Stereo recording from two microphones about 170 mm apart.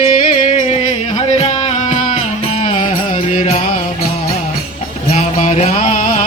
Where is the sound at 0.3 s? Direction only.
50° left (ahead or behind).